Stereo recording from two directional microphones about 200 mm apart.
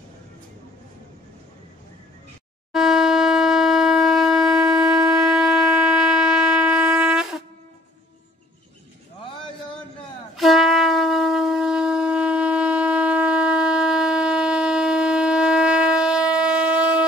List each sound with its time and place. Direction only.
2.7 s shofar: centre (ahead or behind)
10.3 s shofar: centre (ahead or behind)